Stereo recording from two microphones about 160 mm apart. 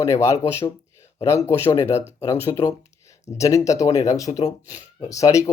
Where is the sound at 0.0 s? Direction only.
20° left (ahead or behind).